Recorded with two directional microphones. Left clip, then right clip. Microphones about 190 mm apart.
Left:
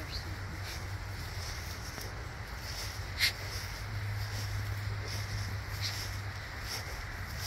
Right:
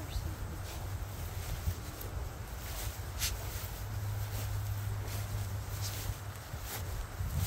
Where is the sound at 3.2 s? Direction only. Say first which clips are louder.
Left 9 dB; 25° right (ahead or behind).